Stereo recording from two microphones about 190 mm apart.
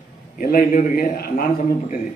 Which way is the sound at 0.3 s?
45° left (ahead or behind).